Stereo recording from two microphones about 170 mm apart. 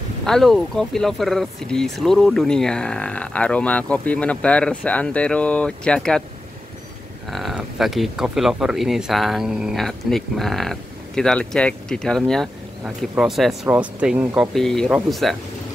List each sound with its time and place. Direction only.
0.2 s speech: centre (ahead or behind)
7.2 s speech: centre (ahead or behind)
14.5 s speech: centre (ahead or behind)